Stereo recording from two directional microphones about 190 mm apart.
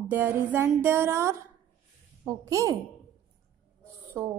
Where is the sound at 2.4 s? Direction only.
15° right (ahead or behind).